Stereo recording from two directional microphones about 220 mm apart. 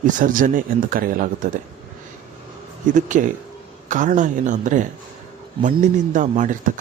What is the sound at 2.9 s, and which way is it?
Speech, 35° right (ahead or behind).